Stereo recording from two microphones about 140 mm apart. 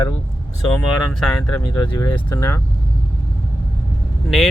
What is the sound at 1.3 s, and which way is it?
Speech, 10° left (ahead or behind).